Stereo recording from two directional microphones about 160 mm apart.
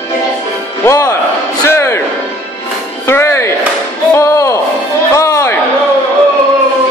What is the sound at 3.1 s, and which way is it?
Chop, 15° left (ahead or behind).